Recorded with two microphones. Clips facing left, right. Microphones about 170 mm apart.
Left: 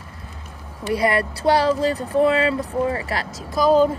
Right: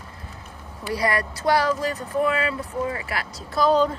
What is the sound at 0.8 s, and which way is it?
Speech, 25° left (ahead or behind).